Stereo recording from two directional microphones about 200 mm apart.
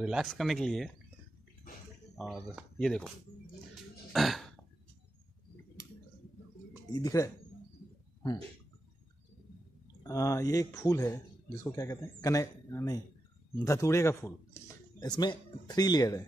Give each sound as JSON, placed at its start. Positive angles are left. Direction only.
{"t": 0.0, "sound": "speech", "side_deg": 0}
{"t": 2.1, "sound": "speech", "side_deg": 0}
{"t": 4.1, "sound": "burping", "side_deg": 0}
{"t": 7.0, "sound": "speech", "side_deg": 15}
{"t": 10.0, "sound": "speech", "side_deg": 15}